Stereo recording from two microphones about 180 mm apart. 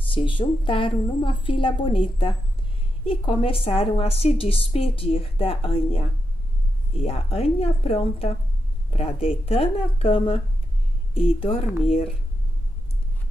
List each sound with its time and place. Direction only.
0.0 s a woman's voice: 30° left (ahead or behind)